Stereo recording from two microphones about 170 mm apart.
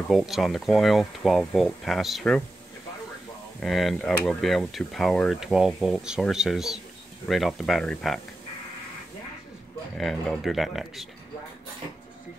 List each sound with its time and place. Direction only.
0.1 s speech: centre (ahead or behind)
3.6 s speech: centre (ahead or behind)
9.9 s speech: centre (ahead or behind)